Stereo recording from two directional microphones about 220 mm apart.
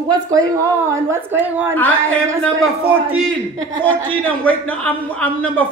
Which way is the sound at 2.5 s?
70° right (ahead or behind).